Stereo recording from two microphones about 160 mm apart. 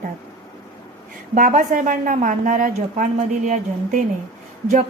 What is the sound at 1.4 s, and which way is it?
A woman's voice, 60° right (ahead or behind).